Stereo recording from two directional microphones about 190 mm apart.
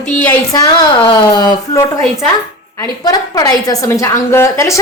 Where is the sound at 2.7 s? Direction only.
20° left (ahead or behind).